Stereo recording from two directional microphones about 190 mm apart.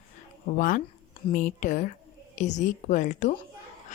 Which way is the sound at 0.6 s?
45° left (ahead or behind).